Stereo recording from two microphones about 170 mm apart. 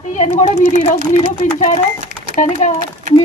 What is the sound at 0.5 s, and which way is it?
A woman's voice, 50° left (ahead or behind).